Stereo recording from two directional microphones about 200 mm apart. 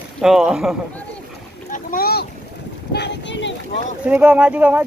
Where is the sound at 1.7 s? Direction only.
45° left (ahead or behind).